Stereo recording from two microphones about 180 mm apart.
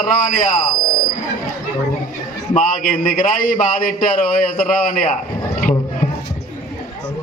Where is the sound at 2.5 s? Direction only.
50° left (ahead or behind).